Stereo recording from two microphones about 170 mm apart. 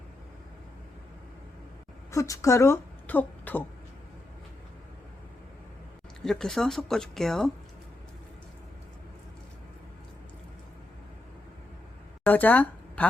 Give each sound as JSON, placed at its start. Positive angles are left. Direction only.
{"t": 2.0, "sound": "speech", "side_deg": 20}
{"t": 6.2, "sound": "speech", "side_deg": 5}
{"t": 12.2, "sound": "speech", "side_deg": 10}